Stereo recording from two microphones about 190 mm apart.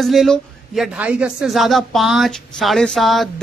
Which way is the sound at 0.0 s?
Centre (ahead or behind).